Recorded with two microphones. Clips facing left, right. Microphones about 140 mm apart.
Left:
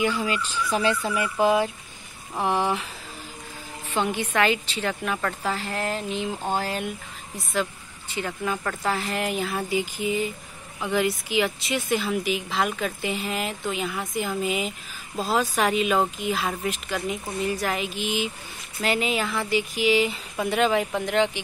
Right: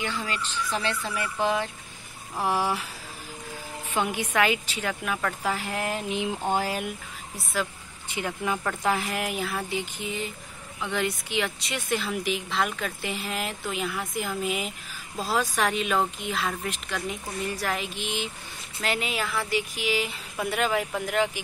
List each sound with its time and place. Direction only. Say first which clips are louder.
0.0 s speech: left 6 dB; 10° left (ahead or behind)
2.4 s speech: left 2 dB; 5° right (ahead or behind)
3.9 s speech: left 2 dB; 10° right (ahead or behind)
8.1 s speech: left 1 dB; 15° right (ahead or behind)